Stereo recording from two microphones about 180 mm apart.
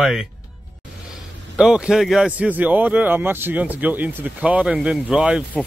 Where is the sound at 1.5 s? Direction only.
5° right (ahead or behind).